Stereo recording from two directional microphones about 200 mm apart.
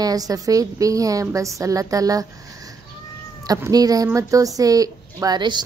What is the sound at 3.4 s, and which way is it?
A woman's voice, 15° right (ahead or behind).